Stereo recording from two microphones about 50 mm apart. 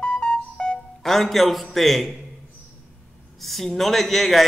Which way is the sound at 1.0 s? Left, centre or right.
Centre.